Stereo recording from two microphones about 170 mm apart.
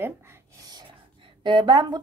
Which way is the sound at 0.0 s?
15° right (ahead or behind).